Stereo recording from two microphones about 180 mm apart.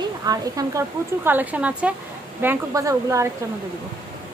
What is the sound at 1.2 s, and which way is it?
A woman's voice, 10° right (ahead or behind).